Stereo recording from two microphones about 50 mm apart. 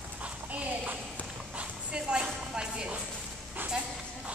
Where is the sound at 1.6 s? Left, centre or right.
Centre.